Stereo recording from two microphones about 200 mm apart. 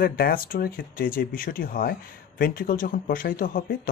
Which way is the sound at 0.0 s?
45° left (ahead or behind).